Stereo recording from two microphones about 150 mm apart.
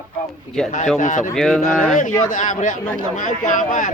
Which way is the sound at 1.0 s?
55° left (ahead or behind).